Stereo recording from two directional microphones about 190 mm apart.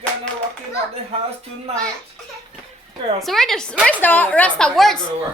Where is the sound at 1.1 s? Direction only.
30° right (ahead or behind).